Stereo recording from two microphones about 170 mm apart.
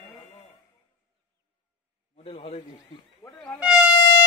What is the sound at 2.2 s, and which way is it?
Speech, 35° left (ahead or behind).